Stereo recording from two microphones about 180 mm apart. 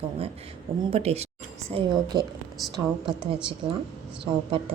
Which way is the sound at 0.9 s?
35° right (ahead or behind).